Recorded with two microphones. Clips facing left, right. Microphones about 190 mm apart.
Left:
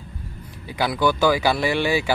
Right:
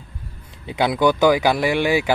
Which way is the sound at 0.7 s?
20° right (ahead or behind).